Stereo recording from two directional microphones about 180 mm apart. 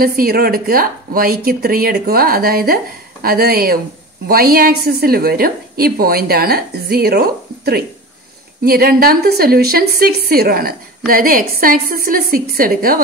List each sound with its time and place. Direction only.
0.0 s a woman's voice: 55° right (ahead or behind)